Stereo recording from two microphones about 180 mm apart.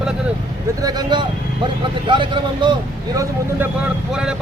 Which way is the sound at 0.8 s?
25° right (ahead or behind).